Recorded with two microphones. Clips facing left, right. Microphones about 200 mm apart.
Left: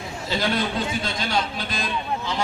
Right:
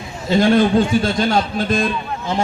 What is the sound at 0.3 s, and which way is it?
A man's voice, 50° right (ahead or behind).